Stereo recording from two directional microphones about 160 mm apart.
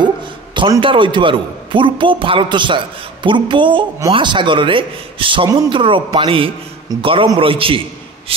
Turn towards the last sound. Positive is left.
turn(degrees=-35)  # may be behind; listen again after turning